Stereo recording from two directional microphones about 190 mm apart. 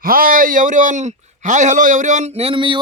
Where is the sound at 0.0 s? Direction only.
50° right (ahead or behind).